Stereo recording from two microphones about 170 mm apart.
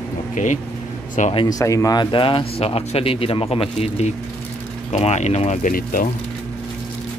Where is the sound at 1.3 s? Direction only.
25° left (ahead or behind); by 6.1 s 55° left (ahead or behind).